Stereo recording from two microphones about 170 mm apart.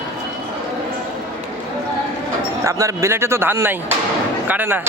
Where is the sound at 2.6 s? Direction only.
20° right (ahead or behind).